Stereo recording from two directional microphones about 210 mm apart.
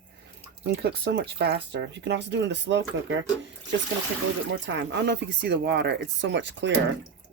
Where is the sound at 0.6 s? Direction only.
50° right (ahead or behind).